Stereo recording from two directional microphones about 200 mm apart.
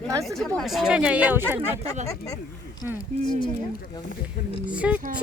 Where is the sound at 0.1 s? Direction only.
15° right (ahead or behind).